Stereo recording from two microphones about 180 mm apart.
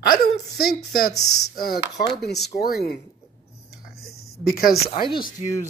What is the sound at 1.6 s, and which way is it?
Speech, 55° left (ahead or behind).